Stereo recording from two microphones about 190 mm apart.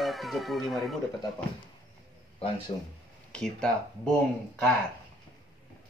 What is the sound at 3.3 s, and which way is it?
Cat, 5° left (ahead or behind).